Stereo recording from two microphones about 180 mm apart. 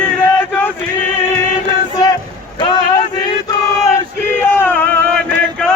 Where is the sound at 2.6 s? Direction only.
25° left (ahead or behind).